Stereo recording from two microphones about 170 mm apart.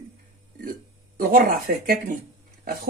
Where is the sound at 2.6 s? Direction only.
60° right (ahead or behind).